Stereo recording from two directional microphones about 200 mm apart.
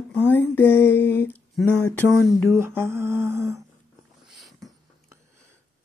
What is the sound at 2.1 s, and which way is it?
Mantra, 10° right (ahead or behind).